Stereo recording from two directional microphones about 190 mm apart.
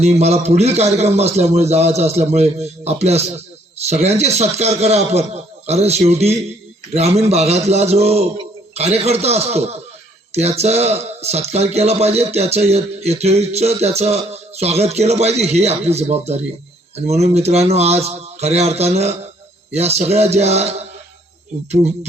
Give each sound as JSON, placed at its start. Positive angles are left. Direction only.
{"t": 0.0, "sound": "a man's voice", "side_deg": -35}